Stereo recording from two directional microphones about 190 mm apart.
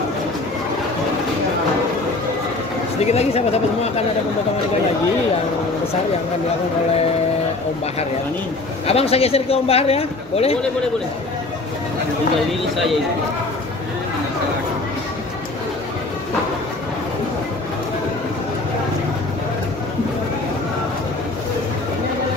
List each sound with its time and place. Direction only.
3.0 s a man's voice: 35° left (ahead or behind)
8.8 s a man's voice: 30° left (ahead or behind)